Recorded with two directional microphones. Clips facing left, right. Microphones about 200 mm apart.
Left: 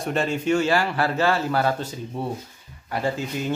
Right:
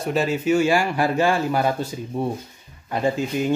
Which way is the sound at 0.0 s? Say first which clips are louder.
Right 2 dB; 5° right (ahead or behind).